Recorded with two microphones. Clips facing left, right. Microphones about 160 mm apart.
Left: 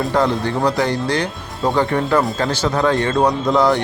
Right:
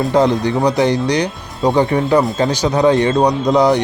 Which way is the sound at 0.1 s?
20° right (ahead or behind).